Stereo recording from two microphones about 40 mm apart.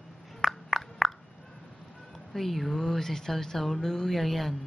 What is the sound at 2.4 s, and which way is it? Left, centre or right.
Speech, centre.